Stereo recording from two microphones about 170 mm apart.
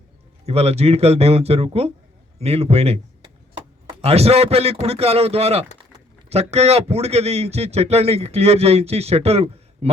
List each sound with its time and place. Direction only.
0.4 s a man's voice: 35° right (ahead or behind)